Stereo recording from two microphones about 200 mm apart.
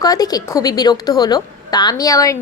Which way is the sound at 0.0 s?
20° left (ahead or behind).